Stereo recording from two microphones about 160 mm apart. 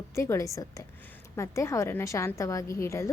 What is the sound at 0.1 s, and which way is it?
A woman's voice, 20° left (ahead or behind).